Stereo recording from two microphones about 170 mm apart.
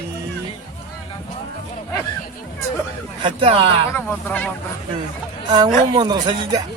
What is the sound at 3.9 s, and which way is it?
Speech, 10° left (ahead or behind).